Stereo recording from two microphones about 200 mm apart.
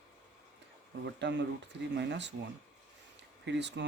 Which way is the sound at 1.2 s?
60° right (ahead or behind).